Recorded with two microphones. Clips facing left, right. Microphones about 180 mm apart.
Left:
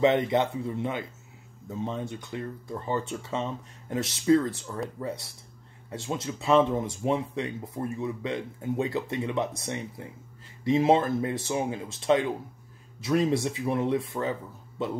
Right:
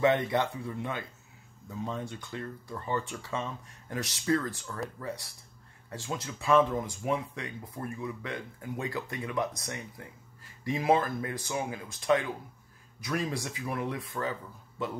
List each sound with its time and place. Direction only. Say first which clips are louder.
0.0 s speech: left 3 dB; 20° left (ahead or behind)